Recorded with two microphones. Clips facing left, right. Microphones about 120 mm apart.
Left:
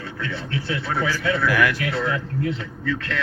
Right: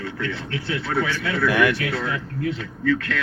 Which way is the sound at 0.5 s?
30° left (ahead or behind).